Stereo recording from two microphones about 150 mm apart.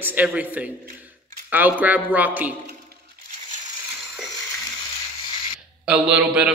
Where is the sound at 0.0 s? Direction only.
10° right (ahead or behind).